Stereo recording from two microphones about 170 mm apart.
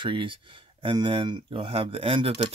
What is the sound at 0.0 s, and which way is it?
Speech, 30° right (ahead or behind).